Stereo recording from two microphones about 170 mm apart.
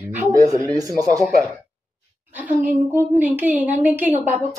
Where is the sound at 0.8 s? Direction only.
20° right (ahead or behind).